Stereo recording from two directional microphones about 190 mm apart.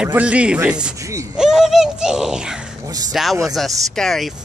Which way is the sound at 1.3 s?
Centre (ahead or behind).